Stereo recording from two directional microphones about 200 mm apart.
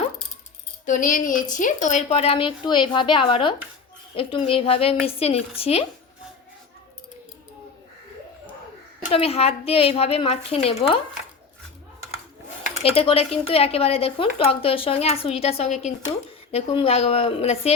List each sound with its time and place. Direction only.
0.9 s speech: 40° left (ahead or behind)
9.1 s speech: 30° left (ahead or behind)
12.8 s speech: 30° left (ahead or behind)